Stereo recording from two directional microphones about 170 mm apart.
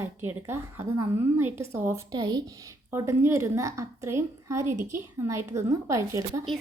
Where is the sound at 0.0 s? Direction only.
15° right (ahead or behind).